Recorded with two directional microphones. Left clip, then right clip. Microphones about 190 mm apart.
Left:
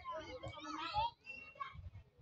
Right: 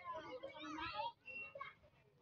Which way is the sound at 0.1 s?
20° left (ahead or behind).